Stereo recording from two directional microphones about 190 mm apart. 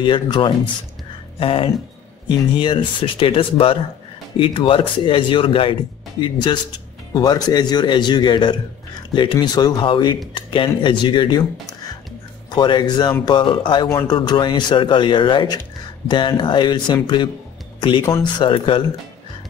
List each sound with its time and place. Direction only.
0.0 s speech: 25° left (ahead or behind)
12.4 s speech: 25° left (ahead or behind)
18.0 s speech: 15° left (ahead or behind)
18.4 s speech: 25° left (ahead or behind)